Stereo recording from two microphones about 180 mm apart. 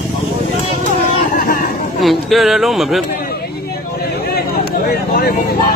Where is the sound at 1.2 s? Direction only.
50° left (ahead or behind).